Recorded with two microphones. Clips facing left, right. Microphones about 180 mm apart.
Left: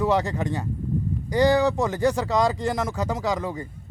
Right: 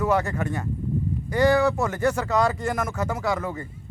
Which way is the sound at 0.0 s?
15° left (ahead or behind).